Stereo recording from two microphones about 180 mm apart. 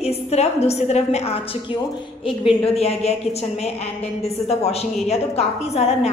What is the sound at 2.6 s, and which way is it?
Speech, 35° left (ahead or behind).